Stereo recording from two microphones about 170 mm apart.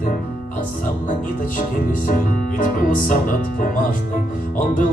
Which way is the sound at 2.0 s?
55° left (ahead or behind).